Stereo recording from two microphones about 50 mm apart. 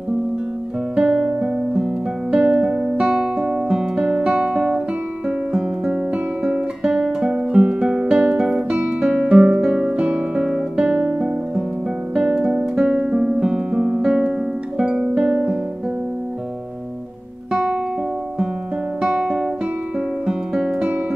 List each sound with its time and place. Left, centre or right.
0.9 s music: centre
2.6 s music: centre
3.7 s guitar: centre
5.5 s music: centre
9.0 s guitar: centre
12.7 s guitar: centre
14.8 s music: centre
17.5 s music: centre
18.9 s music: centre